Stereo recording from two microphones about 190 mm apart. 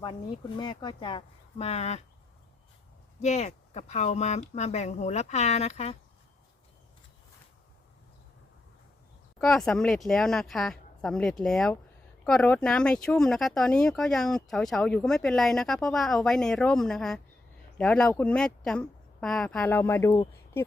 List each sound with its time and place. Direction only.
0.0 s speech: 20° left (ahead or behind)
3.2 s speech: 35° left (ahead or behind)
9.4 s speech: centre (ahead or behind)